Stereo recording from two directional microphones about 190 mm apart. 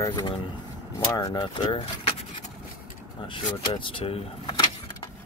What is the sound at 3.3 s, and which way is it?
Speech, 25° left (ahead or behind).